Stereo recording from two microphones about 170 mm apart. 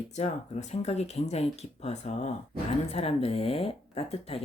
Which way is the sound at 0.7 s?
40° left (ahead or behind).